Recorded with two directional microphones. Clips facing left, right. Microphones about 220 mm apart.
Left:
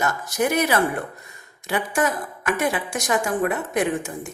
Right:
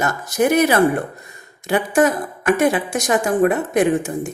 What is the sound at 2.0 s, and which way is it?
Speech, 35° right (ahead or behind).